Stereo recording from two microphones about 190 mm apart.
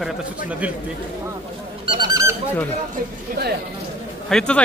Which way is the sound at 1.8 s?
20° right (ahead or behind).